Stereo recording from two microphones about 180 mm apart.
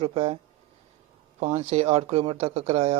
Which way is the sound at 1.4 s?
40° right (ahead or behind).